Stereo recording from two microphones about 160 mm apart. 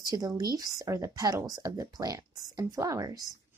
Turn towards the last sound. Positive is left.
turn(degrees=-20)  # may be behind; listen again after turning